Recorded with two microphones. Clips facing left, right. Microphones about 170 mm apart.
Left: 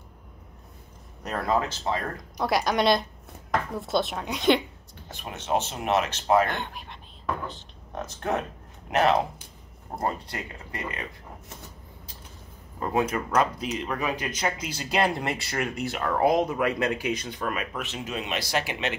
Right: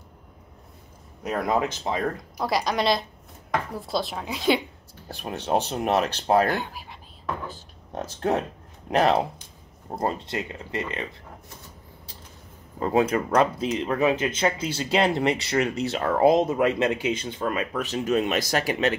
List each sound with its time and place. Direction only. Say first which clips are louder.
1.2 s speech: right 2 dB; 15° right (ahead or behind)
2.3 s speech: left 2 dB; centre (ahead or behind)
5.0 s speech: right 5 dB; 35° right (ahead or behind)
6.5 s speech: right 4 dB; 5° right (ahead or behind)
7.9 s speech: right 4 dB; 35° right (ahead or behind)
9.9 s speech: right 3 dB; 25° right (ahead or behind)
12.8 s speech: right 4 dB; 30° right (ahead or behind)